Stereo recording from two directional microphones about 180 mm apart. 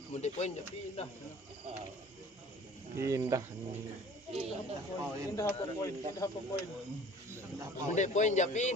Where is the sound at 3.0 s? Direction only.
15° right (ahead or behind).